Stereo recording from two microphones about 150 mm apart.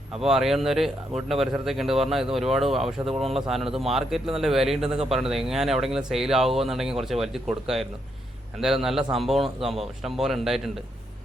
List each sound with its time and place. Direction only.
0.2 s speech: 5° right (ahead or behind)
4.9 s speech: 40° right (ahead or behind)
5.1 s speech: 5° right (ahead or behind)